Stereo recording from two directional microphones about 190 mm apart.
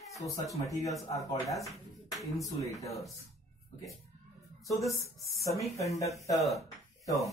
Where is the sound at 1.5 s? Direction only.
Centre (ahead or behind).